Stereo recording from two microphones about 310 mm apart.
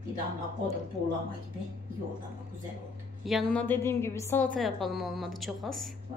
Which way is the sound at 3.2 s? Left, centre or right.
Centre.